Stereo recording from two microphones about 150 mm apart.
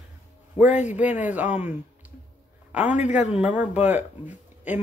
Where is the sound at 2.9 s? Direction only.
50° left (ahead or behind).